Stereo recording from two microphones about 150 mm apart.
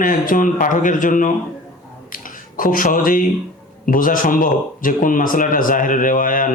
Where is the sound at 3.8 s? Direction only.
65° left (ahead or behind).